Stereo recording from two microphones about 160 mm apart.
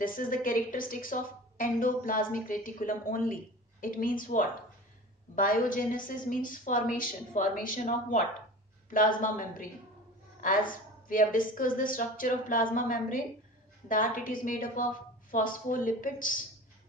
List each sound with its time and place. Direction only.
0.0 s a woman's voice: 60° left (ahead or behind)